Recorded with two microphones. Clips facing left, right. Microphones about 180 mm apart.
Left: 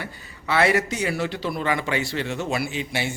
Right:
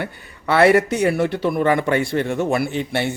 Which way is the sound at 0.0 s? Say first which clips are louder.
Right 7 dB; 60° right (ahead or behind).